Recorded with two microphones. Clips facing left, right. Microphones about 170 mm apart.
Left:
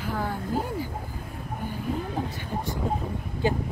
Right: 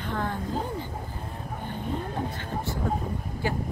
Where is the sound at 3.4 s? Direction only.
20° left (ahead or behind).